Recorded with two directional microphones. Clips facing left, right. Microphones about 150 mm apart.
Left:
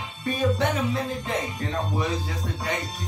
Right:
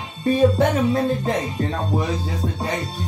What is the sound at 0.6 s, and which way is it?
Music, 45° right (ahead or behind).